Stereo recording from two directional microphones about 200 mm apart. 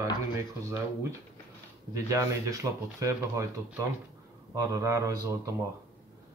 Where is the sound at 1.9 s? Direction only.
15° right (ahead or behind).